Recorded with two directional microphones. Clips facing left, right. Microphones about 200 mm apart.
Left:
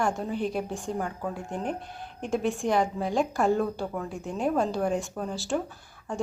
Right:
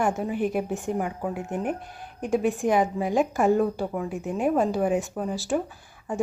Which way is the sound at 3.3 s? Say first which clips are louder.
Right 3 dB; 15° right (ahead or behind).